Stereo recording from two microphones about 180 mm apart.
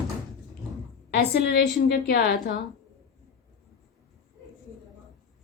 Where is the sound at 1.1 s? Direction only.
60° left (ahead or behind).